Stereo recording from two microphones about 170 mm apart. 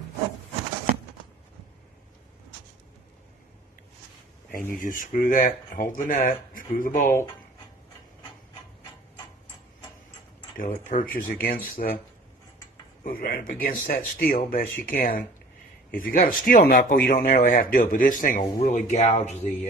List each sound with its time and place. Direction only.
4.5 s speech: 55° left (ahead or behind)
10.6 s a man's voice: 50° left (ahead or behind)
13.0 s a man's voice: 55° left (ahead or behind)
18.4 s speech: 45° left (ahead or behind)